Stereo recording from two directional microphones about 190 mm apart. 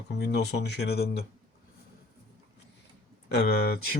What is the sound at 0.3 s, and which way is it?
Speech, 60° left (ahead or behind).